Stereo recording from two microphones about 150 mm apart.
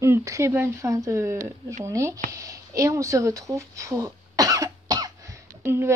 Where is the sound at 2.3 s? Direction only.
20° right (ahead or behind).